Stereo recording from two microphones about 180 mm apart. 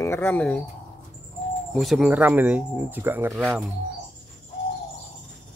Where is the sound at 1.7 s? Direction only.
Centre (ahead or behind).